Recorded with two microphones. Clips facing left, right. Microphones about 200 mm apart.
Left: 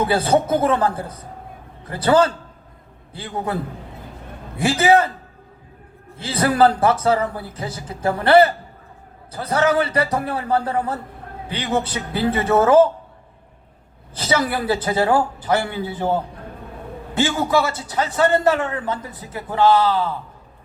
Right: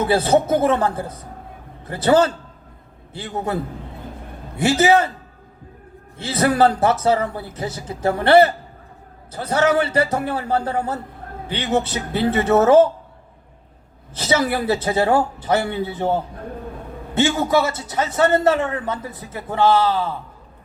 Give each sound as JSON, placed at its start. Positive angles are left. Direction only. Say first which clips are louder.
{"t": 0.0, "sound": "a man's voice", "louder": "right 1 dB", "side_deg": -25}
{"t": 4.6, "sound": "a man's voice", "louder": "even", "side_deg": -30}
{"t": 6.1, "sound": "a man's voice", "louder": "even", "side_deg": -25}
{"t": 14.1, "sound": "a man's voice", "louder": "right 1 dB", "side_deg": -25}
{"t": 17.2, "sound": "a man's voice", "louder": "right 1 dB", "side_deg": -25}